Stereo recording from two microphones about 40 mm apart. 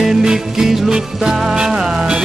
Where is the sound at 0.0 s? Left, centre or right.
Centre.